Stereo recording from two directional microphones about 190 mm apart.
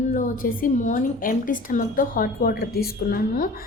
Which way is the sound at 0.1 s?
45° left (ahead or behind).